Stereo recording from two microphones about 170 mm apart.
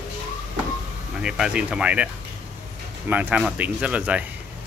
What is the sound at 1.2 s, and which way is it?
Speech, 5° right (ahead or behind).